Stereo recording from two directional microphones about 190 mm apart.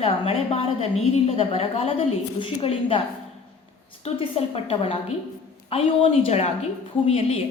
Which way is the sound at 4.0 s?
30° left (ahead or behind).